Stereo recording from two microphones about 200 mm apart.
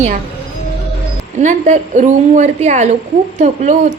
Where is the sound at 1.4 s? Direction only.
40° right (ahead or behind).